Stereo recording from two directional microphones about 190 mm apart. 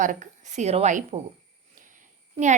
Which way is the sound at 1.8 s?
40° right (ahead or behind).